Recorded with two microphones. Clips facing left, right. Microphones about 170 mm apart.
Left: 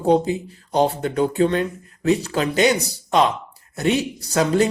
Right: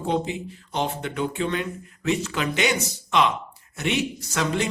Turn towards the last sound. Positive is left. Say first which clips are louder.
# left 7 dB
turn(degrees=40)  # may be behind; listen again after turning